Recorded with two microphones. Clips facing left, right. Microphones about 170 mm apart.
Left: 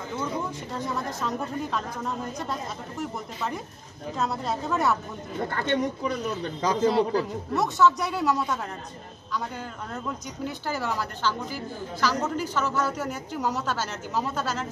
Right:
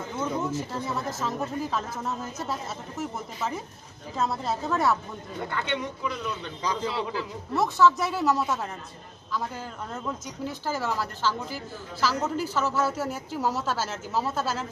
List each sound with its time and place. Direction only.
0.2 s a woman's voice: 5° right (ahead or behind)
5.5 s a man's voice: 45° left (ahead or behind)
7.5 s a woman's voice: centre (ahead or behind)
10.4 s a woman's voice: centre (ahead or behind)